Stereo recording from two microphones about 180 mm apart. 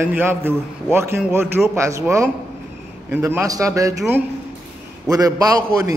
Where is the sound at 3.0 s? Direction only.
10° right (ahead or behind).